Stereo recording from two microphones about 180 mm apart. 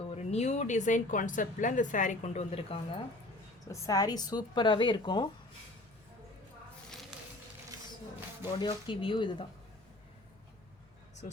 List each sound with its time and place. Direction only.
0.1 s speech: 35° left (ahead or behind)
3.7 s speech: 20° left (ahead or behind)
8.5 s speech: 25° left (ahead or behind)